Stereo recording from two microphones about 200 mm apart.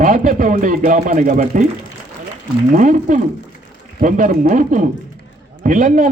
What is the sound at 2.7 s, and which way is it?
A man's voice, 40° right (ahead or behind).